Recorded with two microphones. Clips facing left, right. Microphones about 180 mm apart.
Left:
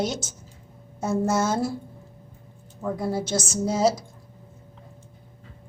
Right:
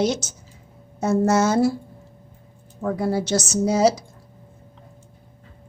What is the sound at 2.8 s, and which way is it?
A woman's voice, 75° right (ahead or behind).